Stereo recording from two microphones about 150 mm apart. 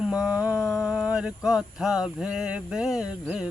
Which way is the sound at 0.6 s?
5° right (ahead or behind).